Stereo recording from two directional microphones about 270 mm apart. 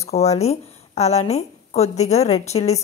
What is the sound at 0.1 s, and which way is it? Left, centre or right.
Speech, left.